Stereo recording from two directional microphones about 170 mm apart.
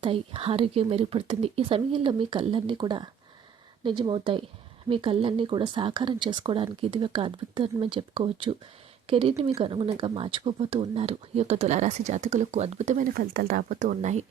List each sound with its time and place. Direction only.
0.0 s speech: 35° right (ahead or behind)
13.1 s speech: 60° right (ahead or behind); by 14.3 s 45° right (ahead or behind)